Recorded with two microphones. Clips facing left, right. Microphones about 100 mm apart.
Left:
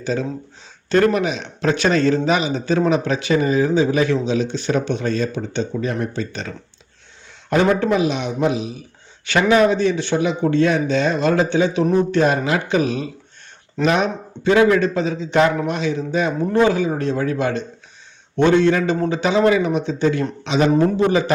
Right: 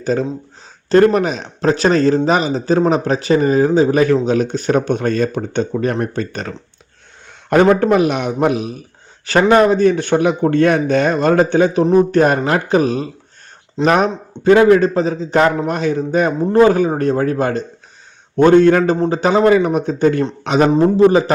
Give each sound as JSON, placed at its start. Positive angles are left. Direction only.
{"t": 0.0, "sound": "a man's voice", "side_deg": -45}
{"t": 7.5, "sound": "a man's voice", "side_deg": -50}
{"t": 9.2, "sound": "a man's voice", "side_deg": -45}
{"t": 20.7, "sound": "a man's voice", "side_deg": -35}